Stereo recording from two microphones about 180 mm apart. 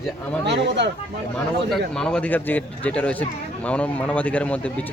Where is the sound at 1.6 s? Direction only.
Centre (ahead or behind).